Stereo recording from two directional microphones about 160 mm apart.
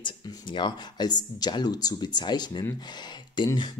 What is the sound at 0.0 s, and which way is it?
Speech, 30° left (ahead or behind).